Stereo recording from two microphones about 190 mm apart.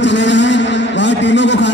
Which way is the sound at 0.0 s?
70° left (ahead or behind).